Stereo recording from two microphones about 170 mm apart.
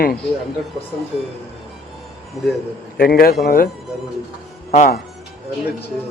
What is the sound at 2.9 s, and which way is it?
Speech, 60° left (ahead or behind).